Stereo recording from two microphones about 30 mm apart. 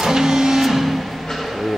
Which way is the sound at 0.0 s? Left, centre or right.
Centre.